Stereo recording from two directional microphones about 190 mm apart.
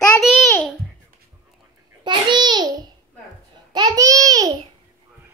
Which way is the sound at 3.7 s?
20° right (ahead or behind).